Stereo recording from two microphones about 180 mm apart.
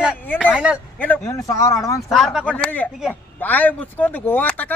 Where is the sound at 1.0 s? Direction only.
15° left (ahead or behind).